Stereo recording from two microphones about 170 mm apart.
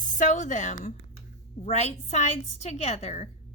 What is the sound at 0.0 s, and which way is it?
A woman's voice, 50° left (ahead or behind).